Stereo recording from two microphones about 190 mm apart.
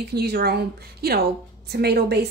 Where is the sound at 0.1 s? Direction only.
60° right (ahead or behind).